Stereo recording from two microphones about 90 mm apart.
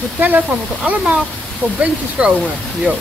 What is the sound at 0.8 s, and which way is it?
Speech, 15° right (ahead or behind).